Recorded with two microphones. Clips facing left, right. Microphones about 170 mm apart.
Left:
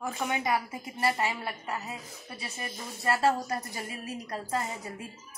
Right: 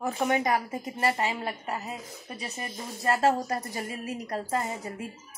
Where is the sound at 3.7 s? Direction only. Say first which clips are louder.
Right 4 dB; 45° right (ahead or behind).